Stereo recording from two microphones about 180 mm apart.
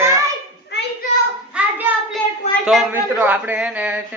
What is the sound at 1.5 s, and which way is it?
Child singing, 10° right (ahead or behind).